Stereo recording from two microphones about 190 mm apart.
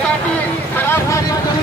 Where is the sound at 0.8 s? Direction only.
10° left (ahead or behind).